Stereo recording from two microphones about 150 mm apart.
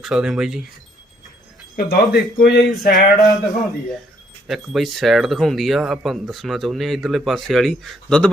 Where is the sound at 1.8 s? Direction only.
90° left.